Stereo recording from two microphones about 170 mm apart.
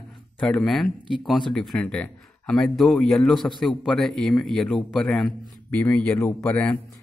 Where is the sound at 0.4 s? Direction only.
5° left (ahead or behind).